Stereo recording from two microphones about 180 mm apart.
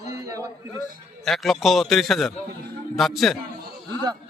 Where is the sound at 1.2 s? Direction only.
Centre (ahead or behind).